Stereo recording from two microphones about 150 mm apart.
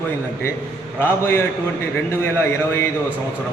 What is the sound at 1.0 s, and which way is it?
A man's voice, 15° left (ahead or behind).